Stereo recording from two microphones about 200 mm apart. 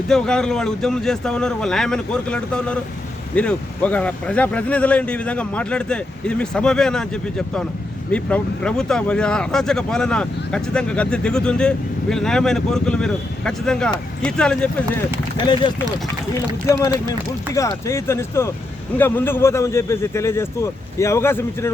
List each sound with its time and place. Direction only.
0.1 s speech: 5° left (ahead or behind)
15.4 s speech: 20° left (ahead or behind)
16.8 s speech: 15° left (ahead or behind)